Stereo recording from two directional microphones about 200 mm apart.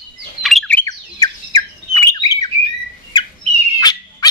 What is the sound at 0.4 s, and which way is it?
Bird, centre (ahead or behind).